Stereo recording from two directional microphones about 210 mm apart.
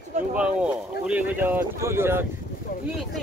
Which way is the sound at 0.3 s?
5° right (ahead or behind).